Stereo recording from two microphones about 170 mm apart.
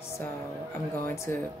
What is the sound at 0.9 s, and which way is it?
Speech, 15° left (ahead or behind).